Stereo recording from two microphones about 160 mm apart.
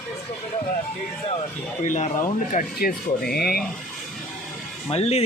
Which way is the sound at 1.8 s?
50° left (ahead or behind).